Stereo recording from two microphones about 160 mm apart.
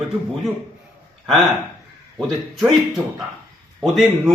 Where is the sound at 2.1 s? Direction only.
Centre (ahead or behind).